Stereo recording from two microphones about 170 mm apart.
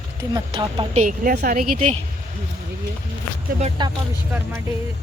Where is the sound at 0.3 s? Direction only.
25° right (ahead or behind).